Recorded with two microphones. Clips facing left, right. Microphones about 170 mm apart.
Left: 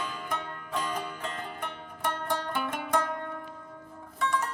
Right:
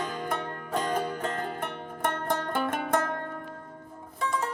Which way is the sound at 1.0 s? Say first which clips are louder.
Right 6 dB; 40° right (ahead or behind).